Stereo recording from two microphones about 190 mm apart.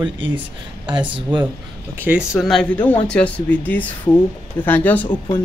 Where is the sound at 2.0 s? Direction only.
10° right (ahead or behind); by 5.1 s 10° left (ahead or behind).